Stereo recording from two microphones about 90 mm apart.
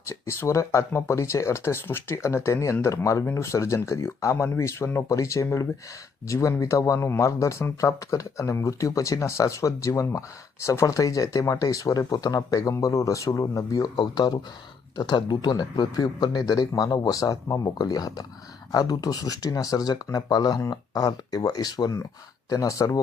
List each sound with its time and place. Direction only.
0.1 s a man's voice: 30° left (ahead or behind); by 21.9 s 50° left (ahead or behind)
22.4 s speech: 40° left (ahead or behind)